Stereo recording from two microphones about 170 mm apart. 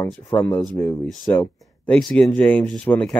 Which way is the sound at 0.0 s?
10° left (ahead or behind).